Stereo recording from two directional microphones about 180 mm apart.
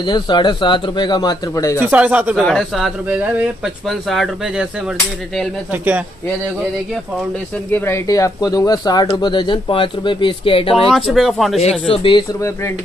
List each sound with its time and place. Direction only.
0.0 s speech: 25° left (ahead or behind)
1.8 s speech: 10° right (ahead or behind)
7.7 s speech: 15° left (ahead or behind); by 10.9 s 30° left (ahead or behind)
10.9 s speech: centre (ahead or behind)
11.9 s speech: 30° left (ahead or behind)
12.4 s speech: 15° left (ahead or behind)